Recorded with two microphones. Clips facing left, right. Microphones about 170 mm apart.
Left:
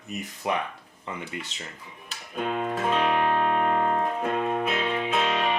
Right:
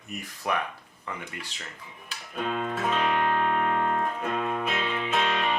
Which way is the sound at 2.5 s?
10° left (ahead or behind).